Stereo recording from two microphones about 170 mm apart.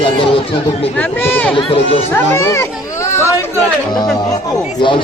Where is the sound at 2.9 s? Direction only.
15° left (ahead or behind).